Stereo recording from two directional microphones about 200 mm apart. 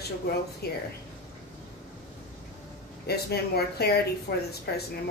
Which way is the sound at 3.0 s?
50° left (ahead or behind).